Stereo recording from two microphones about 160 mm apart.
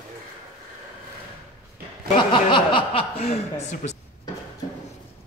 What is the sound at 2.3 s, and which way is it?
Speech, 30° left (ahead or behind).